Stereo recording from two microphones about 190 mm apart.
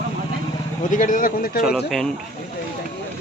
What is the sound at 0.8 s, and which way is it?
Speech, 45° left (ahead or behind).